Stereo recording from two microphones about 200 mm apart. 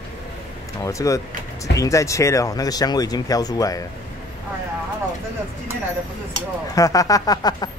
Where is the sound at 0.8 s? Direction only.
15° left (ahead or behind).